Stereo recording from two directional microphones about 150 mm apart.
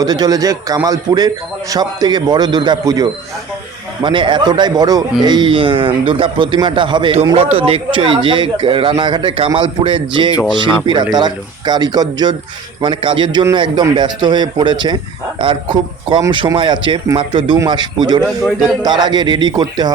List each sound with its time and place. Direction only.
0.0 s a man's voice: 25° right (ahead or behind)